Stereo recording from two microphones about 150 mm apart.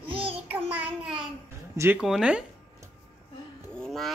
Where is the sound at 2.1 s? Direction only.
5° right (ahead or behind).